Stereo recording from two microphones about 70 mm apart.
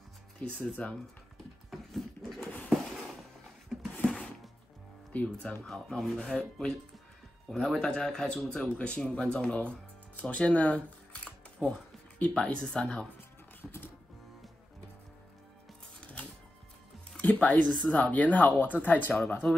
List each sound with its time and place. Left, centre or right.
0.4 s speech: centre
2.2 s a sound: centre
4.0 s music: centre
5.1 s speech: centre
5.7 s speech: centre
11.2 s a sound: centre
16.0 s music: centre
17.2 s speech: left